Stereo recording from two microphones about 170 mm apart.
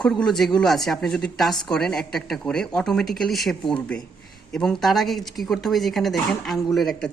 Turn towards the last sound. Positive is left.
turn(degrees=0)  # may be behind; listen again after turning